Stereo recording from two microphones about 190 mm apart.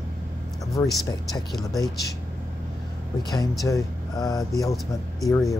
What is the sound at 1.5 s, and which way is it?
Speech, centre (ahead or behind).